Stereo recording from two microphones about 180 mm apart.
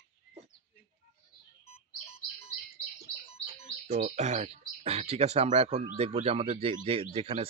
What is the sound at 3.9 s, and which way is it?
Speech, 40° right (ahead or behind).